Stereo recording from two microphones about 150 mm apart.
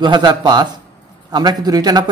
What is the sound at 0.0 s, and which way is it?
Speech, 30° right (ahead or behind).